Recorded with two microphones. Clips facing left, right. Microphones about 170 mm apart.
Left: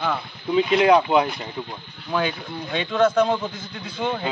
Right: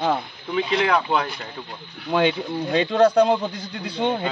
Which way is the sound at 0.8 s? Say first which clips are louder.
Left 5 dB; 15° left (ahead or behind).